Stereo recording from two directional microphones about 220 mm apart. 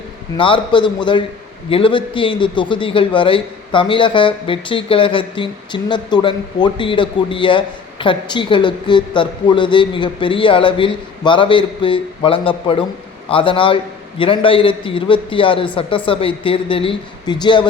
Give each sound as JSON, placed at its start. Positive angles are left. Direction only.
{"t": 0.3, "sound": "a man's voice", "side_deg": 25}